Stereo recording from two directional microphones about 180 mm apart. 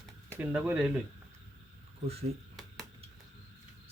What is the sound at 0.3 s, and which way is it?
Speech, 10° right (ahead or behind).